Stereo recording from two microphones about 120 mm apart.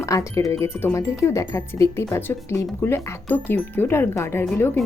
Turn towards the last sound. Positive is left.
turn(degrees=20)  # may be behind; listen again after turning